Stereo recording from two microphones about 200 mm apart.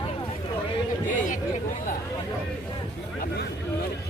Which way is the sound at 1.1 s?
40° left (ahead or behind).